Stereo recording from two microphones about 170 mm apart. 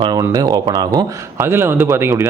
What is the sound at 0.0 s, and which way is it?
Speech, 25° right (ahead or behind).